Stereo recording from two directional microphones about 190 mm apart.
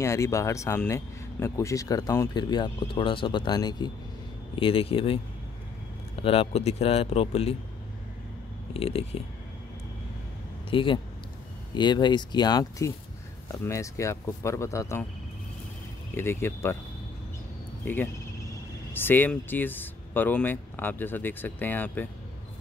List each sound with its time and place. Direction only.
0.0 s speech: 15° left (ahead or behind)
6.2 s speech: 30° left (ahead or behind)
8.7 s speech: 30° left (ahead or behind)
10.7 s speech: 25° left (ahead or behind)
16.2 s speech: 15° left (ahead or behind)
17.8 s speech: 10° left (ahead or behind)